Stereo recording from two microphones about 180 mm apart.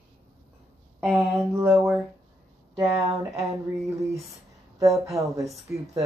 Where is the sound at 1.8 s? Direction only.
Centre (ahead or behind).